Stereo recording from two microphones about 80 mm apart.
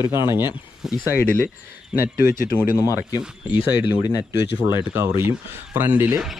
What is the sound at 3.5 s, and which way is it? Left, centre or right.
Speech, left.